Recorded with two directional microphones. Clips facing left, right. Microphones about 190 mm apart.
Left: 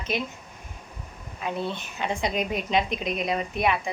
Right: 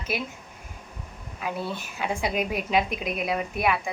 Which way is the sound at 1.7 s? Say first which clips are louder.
Even; 5° right (ahead or behind).